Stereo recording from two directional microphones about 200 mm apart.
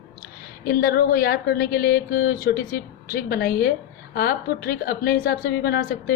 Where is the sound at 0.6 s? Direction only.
50° left (ahead or behind).